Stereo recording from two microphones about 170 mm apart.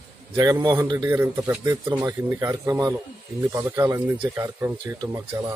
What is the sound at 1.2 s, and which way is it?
Speech, 10° right (ahead or behind).